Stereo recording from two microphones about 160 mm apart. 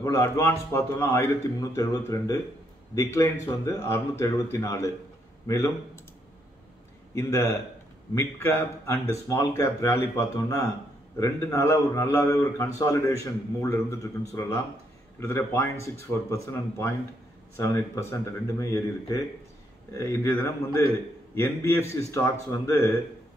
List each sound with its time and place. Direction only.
0.0 s speech: 20° left (ahead or behind)
7.2 s speech: 20° left (ahead or behind)
18.6 s speech: 20° left (ahead or behind)